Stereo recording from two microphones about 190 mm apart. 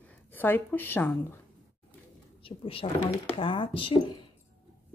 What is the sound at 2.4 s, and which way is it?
Speech, 30° left (ahead or behind).